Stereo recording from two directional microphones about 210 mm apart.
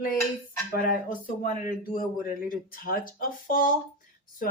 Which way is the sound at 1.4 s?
40° left (ahead or behind).